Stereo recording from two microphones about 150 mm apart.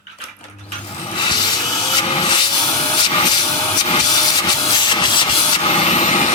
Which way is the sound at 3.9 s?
30° left (ahead or behind).